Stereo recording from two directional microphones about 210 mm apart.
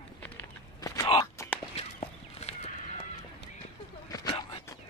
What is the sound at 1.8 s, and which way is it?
Walk, 30° left (ahead or behind).